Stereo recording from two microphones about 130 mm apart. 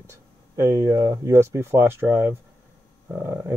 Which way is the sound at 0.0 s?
20° right (ahead or behind).